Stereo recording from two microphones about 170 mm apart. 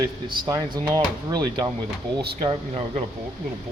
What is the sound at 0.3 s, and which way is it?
Speech, 25° right (ahead or behind).